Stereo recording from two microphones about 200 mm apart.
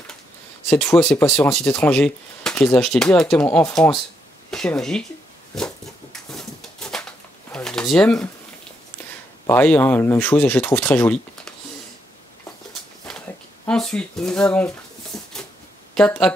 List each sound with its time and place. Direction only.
0.7 s speech: 5° left (ahead or behind)
6.3 s a sound: 5° left (ahead or behind)
9.5 s speech: 10° left (ahead or behind)
13.7 s speech: 5° left (ahead or behind)
15.1 s a sound: 5° left (ahead or behind)
15.9 s speech: 5° left (ahead or behind)